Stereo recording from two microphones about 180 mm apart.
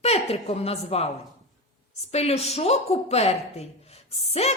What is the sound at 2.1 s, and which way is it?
Speech, 35° left (ahead or behind).